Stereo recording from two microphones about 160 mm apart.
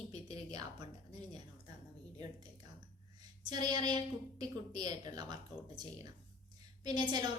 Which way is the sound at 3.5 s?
25° right (ahead or behind).